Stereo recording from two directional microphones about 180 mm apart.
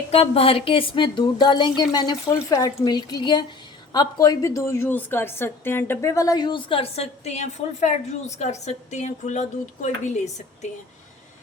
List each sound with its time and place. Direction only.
0.1 s a woman's voice: 30° left (ahead or behind)